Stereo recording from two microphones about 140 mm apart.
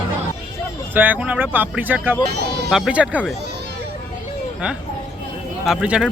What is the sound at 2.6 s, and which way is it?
Speech, centre (ahead or behind).